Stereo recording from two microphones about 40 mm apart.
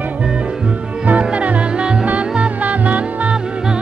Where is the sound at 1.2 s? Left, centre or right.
Right.